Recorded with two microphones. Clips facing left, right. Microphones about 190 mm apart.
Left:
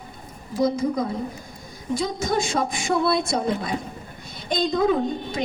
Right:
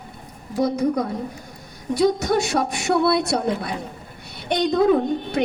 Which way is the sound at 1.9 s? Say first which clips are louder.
Right 5 dB; 70° right (ahead or behind).